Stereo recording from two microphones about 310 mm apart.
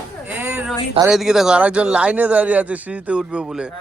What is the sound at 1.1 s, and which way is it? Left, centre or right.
Speech, centre.